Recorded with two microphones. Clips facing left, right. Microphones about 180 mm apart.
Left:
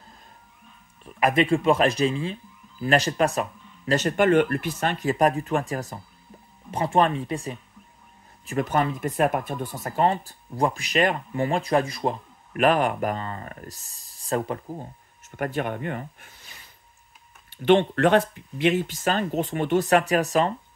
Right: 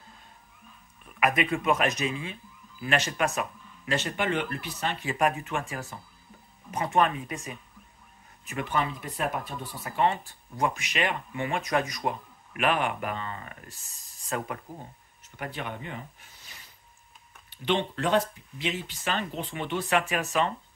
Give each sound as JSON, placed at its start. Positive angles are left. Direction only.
{"t": 1.0, "sound": "speech", "side_deg": 30}
{"t": 15.2, "sound": "speech", "side_deg": 50}
{"t": 17.5, "sound": "speech", "side_deg": 50}